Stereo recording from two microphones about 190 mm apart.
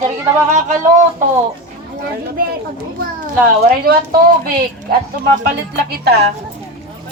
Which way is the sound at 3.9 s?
50° right (ahead or behind).